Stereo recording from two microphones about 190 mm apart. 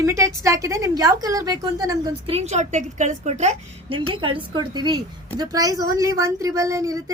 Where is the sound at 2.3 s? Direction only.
35° right (ahead or behind).